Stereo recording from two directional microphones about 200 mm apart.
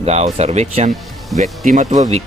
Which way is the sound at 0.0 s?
35° right (ahead or behind).